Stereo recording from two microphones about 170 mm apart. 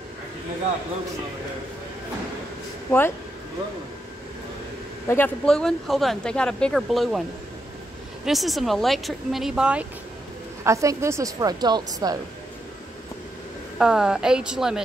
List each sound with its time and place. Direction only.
5.0 s speech: 10° left (ahead or behind)
8.3 s speech: centre (ahead or behind)
10.6 s a woman's voice: 20° right (ahead or behind)
13.7 s speech: 5° right (ahead or behind)